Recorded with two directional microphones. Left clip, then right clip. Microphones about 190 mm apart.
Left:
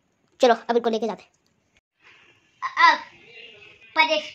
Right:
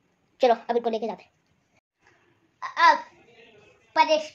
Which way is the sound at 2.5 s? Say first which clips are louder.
Left 2 dB; 45° right (ahead or behind).